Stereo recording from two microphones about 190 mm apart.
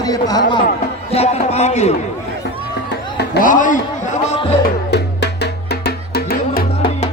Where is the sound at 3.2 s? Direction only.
45° left (ahead or behind).